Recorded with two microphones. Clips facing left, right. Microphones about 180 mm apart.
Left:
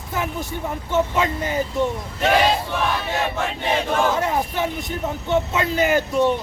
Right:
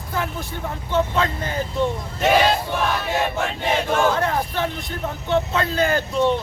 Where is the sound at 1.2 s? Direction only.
20° left (ahead or behind).